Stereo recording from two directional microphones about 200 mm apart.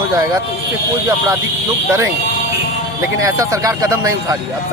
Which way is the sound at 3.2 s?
15° right (ahead or behind).